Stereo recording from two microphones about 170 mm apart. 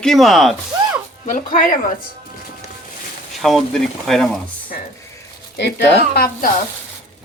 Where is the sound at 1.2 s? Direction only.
50° left (ahead or behind).